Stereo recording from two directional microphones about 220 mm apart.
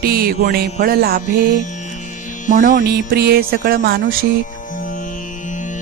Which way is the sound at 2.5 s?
40° right (ahead or behind).